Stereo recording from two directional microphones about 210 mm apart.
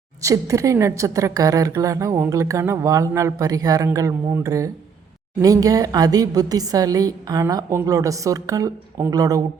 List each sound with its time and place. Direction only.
0.2 s a woman's voice: 15° right (ahead or behind)